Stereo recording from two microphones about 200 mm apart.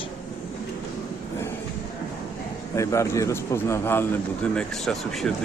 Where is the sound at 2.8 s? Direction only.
15° left (ahead or behind).